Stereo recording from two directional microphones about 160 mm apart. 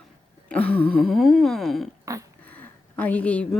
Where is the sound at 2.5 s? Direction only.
10° left (ahead or behind).